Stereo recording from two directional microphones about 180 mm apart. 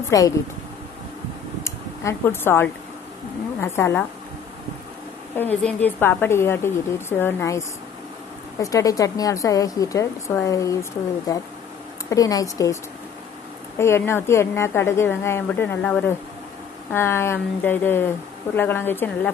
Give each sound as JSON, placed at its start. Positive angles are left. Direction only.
{"t": 0.1, "sound": "a woman's voice", "side_deg": 20}
{"t": 1.6, "sound": "a sound", "side_deg": 15}
{"t": 3.6, "sound": "a woman's voice", "side_deg": 15}
{"t": 5.3, "sound": "a woman's voice", "side_deg": 10}
{"t": 13.7, "sound": "a woman's voice", "side_deg": 15}